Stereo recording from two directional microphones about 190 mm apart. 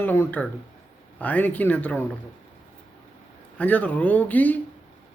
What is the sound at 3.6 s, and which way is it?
Speech, 10° left (ahead or behind).